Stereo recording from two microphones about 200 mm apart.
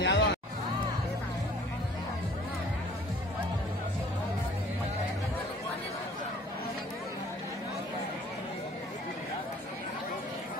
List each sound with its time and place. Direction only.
0.0 s music: 60° left (ahead or behind)